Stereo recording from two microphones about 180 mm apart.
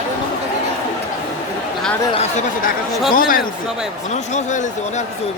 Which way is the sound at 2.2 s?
50° left (ahead or behind).